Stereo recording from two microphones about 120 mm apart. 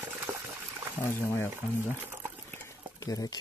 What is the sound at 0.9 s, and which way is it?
Speech, 20° left (ahead or behind).